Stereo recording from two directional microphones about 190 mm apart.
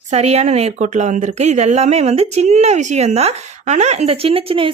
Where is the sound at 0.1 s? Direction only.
35° right (ahead or behind).